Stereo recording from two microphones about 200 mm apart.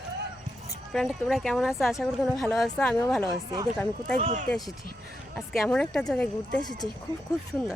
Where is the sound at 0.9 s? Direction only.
Centre (ahead or behind).